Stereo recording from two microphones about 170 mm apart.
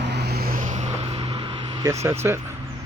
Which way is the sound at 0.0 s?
80° right.